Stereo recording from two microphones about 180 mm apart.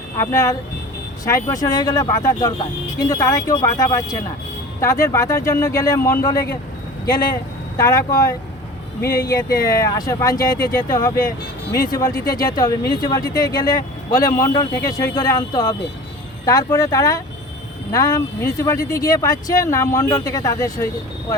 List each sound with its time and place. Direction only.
0.2 s speech: 15° left (ahead or behind)
7.8 s speech: 20° left (ahead or behind)